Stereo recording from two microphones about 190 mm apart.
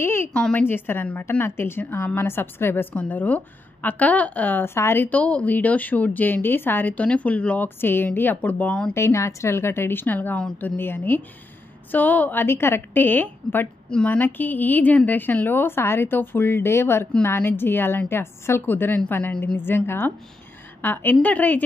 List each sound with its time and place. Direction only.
0.0 s a woman's voice: 10° left (ahead or behind)